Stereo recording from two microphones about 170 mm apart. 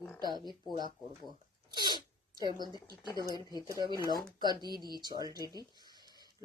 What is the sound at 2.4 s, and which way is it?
Speech, 25° right (ahead or behind).